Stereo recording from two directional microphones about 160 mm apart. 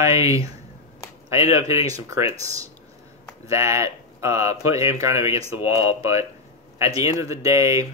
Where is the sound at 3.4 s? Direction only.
20° right (ahead or behind).